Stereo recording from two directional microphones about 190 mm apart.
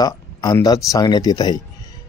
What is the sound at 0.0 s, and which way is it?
Speech, 20° left (ahead or behind).